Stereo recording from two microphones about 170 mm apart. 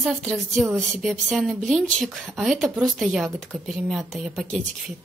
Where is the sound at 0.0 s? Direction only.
Centre (ahead or behind).